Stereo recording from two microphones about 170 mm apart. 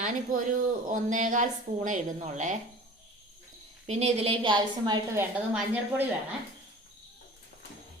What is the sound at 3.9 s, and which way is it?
A woman's voice, 40° right (ahead or behind).